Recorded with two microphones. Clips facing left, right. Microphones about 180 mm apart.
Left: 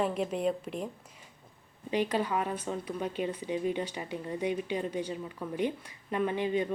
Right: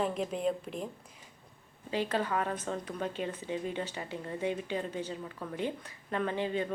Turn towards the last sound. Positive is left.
turn(degrees=15)  # may be behind; listen again after turning